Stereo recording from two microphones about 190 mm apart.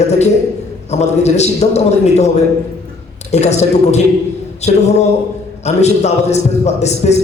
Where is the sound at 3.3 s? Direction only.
35° left (ahead or behind).